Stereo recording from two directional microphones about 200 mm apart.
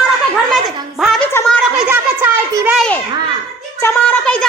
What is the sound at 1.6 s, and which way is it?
A child's voice, 10° right (ahead or behind).